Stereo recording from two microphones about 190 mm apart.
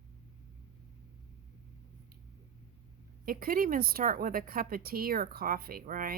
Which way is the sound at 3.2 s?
50° right (ahead or behind).